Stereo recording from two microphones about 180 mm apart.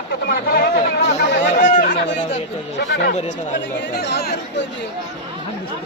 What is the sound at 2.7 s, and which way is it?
A man's voice, 70° left (ahead or behind).